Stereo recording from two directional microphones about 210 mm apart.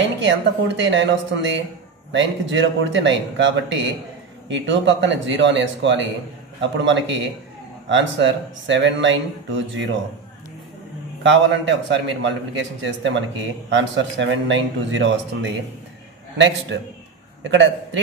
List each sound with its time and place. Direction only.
0.0 s speech: 60° right (ahead or behind)
11.2 s a man's voice: 60° right (ahead or behind)